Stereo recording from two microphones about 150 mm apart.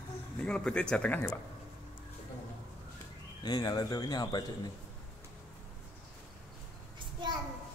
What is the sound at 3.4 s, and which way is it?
Speech, 25° left (ahead or behind).